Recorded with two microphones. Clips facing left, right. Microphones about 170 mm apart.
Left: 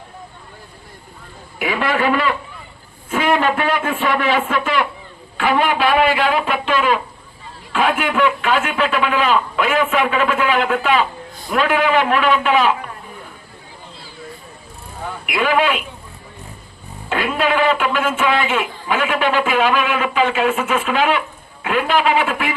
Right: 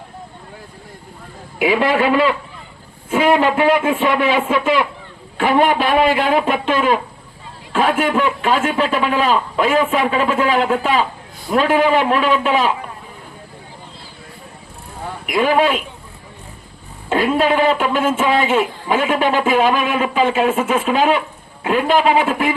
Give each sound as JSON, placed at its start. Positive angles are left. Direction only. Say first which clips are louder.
{"t": 1.5, "sound": "a man's voice", "louder": "right 4 dB", "side_deg": -20}
{"t": 5.4, "sound": "a man's voice", "louder": "right 2 dB", "side_deg": -45}
{"t": 15.3, "sound": "speech", "louder": "right 2 dB", "side_deg": -35}
{"t": 17.1, "sound": "speech", "louder": "right 3 dB", "side_deg": -40}